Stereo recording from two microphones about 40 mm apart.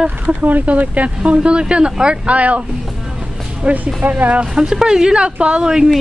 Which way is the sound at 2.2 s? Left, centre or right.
Right.